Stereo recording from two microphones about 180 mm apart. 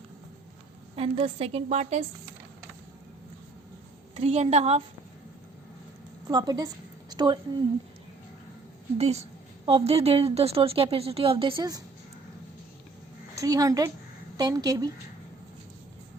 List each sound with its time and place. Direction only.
0.9 s a woman's voice: 30° right (ahead or behind)
4.1 s a woman's voice: 35° right (ahead or behind)
6.2 s a woman's voice: 25° right (ahead or behind)
7.1 s a sound: 25° right (ahead or behind)
9.0 s a woman's voice: 35° right (ahead or behind)
13.3 s a woman's voice: 20° right (ahead or behind)